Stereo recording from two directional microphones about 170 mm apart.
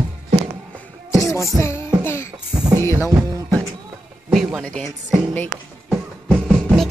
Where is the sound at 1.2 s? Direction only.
15° left (ahead or behind).